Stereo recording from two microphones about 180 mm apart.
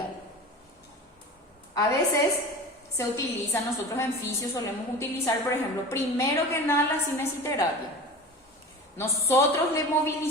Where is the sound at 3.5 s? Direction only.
15° left (ahead or behind).